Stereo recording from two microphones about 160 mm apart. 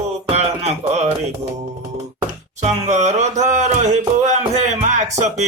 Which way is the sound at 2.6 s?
45° right (ahead or behind).